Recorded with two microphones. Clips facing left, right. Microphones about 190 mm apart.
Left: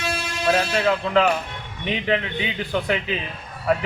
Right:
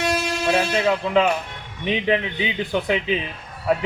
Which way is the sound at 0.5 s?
15° right (ahead or behind).